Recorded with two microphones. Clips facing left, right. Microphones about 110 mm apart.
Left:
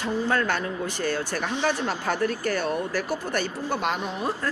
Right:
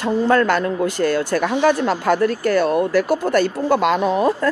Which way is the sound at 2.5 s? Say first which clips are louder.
Right 9 dB; 65° right (ahead or behind).